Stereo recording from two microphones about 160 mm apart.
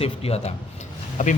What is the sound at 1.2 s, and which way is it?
Speech, 50° left (ahead or behind).